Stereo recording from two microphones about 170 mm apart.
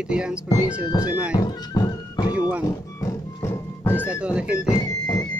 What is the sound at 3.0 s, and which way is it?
Music, 15° left (ahead or behind).